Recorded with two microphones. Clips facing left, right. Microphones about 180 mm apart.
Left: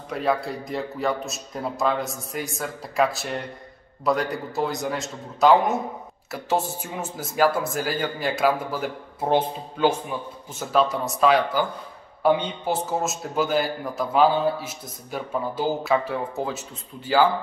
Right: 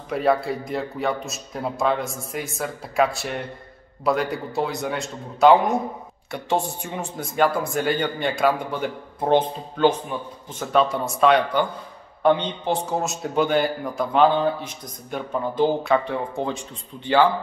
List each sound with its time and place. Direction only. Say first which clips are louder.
0.1 s speech: right 4 dB; centre (ahead or behind)